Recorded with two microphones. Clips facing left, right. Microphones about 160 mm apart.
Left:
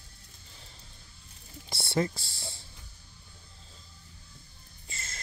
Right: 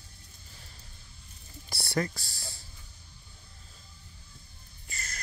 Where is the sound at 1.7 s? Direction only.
25° left (ahead or behind).